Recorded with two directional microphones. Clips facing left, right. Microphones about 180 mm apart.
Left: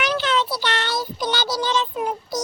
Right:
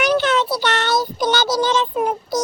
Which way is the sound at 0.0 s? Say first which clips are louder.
Right 5 dB; 50° right (ahead or behind).